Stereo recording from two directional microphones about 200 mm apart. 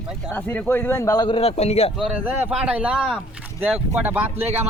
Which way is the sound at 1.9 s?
5° right (ahead or behind).